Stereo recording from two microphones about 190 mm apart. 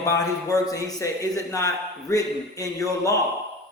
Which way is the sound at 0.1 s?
15° left (ahead or behind).